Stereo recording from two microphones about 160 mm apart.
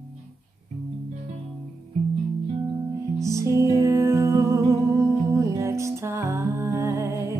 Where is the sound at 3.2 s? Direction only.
20° right (ahead or behind).